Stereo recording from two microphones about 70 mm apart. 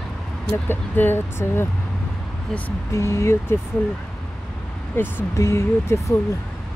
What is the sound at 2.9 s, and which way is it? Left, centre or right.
Speech, left.